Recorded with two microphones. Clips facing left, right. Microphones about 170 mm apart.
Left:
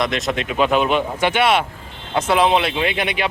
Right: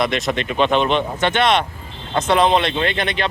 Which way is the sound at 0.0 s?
Centre (ahead or behind).